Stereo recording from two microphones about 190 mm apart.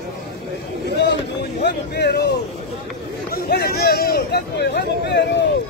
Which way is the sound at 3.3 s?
55° left (ahead or behind).